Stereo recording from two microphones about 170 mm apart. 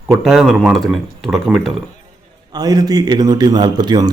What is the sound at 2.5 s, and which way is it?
A man's voice, 25° right (ahead or behind).